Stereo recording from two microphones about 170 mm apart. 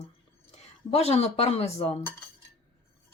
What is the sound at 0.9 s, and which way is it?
Speech, 40° left (ahead or behind).